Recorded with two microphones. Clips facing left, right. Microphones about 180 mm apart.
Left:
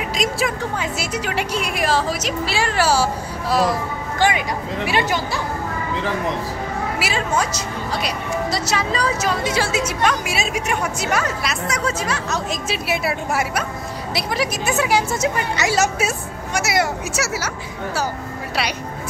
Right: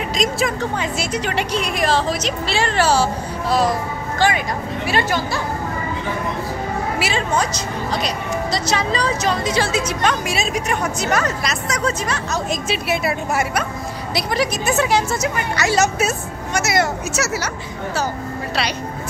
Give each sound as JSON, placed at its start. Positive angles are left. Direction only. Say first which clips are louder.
{"t": 0.1, "sound": "speech", "louder": "right 2 dB", "side_deg": 5}
{"t": 7.0, "sound": "a woman's voice", "louder": "right 1 dB", "side_deg": 5}
{"t": 15.2, "sound": "speech", "louder": "even", "side_deg": 20}
{"t": 15.7, "sound": "speech", "louder": "right 3 dB", "side_deg": 10}